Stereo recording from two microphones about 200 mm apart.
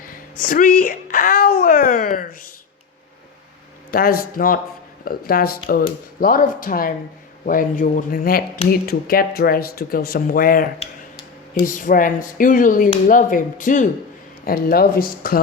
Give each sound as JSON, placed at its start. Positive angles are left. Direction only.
{"t": 0.3, "sound": "speech", "side_deg": 45}
{"t": 3.9, "sound": "speech", "side_deg": 45}